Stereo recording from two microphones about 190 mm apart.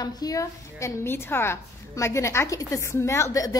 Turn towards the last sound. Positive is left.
turn(degrees=15)  # may be behind; listen again after turning